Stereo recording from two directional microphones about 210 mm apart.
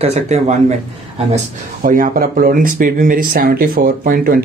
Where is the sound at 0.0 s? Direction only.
30° right (ahead or behind).